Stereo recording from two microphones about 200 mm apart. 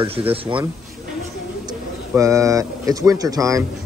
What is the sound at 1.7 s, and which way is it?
A man's voice, 15° right (ahead or behind).